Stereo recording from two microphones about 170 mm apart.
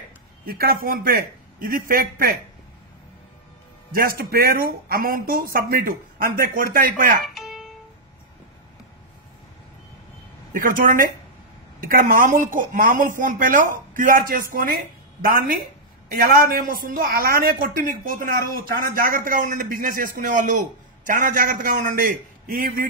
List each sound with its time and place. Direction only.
0.5 s speech: 60° right (ahead or behind)
3.9 s speech: 60° right (ahead or behind)
7.3 s music: centre (ahead or behind)
10.5 s speech: 55° right (ahead or behind)